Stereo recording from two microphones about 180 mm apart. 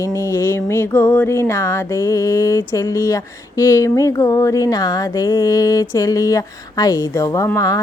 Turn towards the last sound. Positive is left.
turn(degrees=20)  # may be behind; listen again after turning